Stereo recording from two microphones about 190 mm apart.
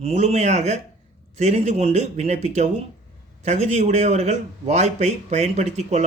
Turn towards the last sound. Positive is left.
turn(degrees=-35)  # may be behind; listen again after turning